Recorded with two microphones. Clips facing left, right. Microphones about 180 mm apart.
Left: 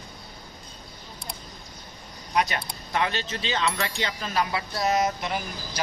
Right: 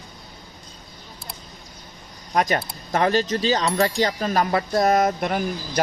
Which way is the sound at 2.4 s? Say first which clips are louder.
Right 4 dB; 45° right (ahead or behind).